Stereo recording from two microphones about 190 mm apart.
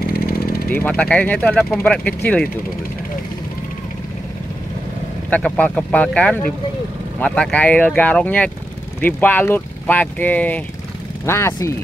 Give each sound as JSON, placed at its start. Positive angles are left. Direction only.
{"t": 0.0, "sound": "vehicle", "side_deg": 50}
{"t": 0.8, "sound": "speech", "side_deg": 5}
{"t": 5.3, "sound": "speech", "side_deg": 5}